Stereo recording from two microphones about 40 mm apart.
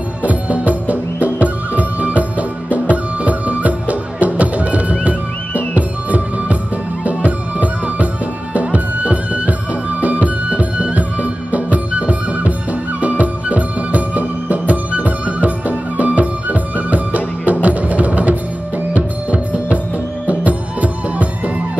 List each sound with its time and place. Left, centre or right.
0.2 s music: right